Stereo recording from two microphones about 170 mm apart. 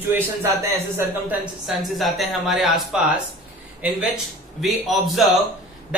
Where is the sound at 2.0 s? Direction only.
Centre (ahead or behind).